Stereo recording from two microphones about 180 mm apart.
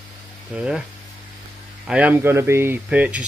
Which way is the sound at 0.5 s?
5° right (ahead or behind).